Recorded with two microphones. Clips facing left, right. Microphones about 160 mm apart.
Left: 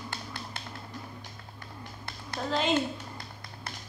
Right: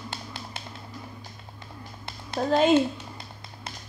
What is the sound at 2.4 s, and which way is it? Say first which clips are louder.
Speech: right 8 dB; 50° right (ahead or behind).